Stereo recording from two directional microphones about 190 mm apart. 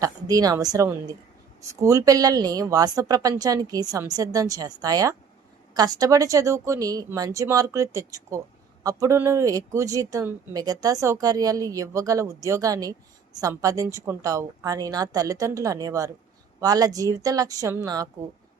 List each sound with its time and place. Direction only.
0.0 s speech: 20° right (ahead or behind)